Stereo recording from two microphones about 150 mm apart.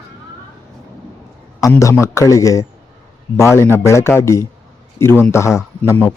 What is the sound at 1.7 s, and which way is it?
A man's voice, 20° left (ahead or behind).